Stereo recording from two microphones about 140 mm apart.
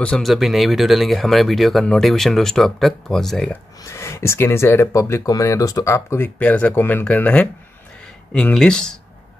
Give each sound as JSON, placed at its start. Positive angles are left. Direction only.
{"t": 0.0, "sound": "speech", "side_deg": 5}
{"t": 3.8, "sound": "speech", "side_deg": 20}